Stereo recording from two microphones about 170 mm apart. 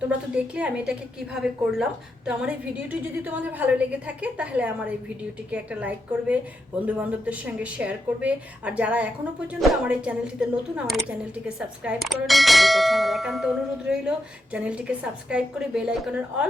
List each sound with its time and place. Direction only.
0.3 s a woman's voice: 5° right (ahead or behind)